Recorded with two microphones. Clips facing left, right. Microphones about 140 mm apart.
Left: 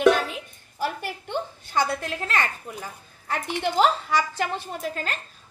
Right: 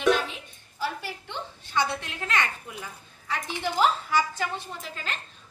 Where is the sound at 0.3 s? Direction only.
50° left (ahead or behind).